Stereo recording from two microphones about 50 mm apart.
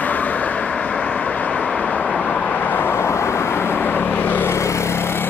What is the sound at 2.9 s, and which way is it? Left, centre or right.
Vehicle, left.